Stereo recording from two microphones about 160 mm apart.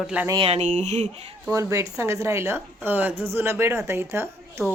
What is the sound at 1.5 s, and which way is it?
Speech, 20° right (ahead or behind).